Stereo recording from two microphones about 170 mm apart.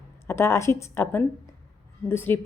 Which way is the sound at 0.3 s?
15° left (ahead or behind).